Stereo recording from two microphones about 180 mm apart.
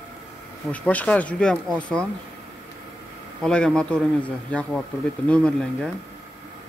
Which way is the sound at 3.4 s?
5° left (ahead or behind).